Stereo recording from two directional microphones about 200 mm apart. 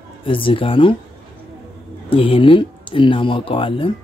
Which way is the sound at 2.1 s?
25° left (ahead or behind).